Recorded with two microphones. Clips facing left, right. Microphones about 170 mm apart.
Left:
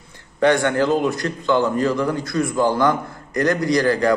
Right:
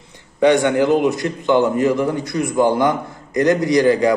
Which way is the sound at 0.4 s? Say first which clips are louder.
Right 3 dB; 20° right (ahead or behind).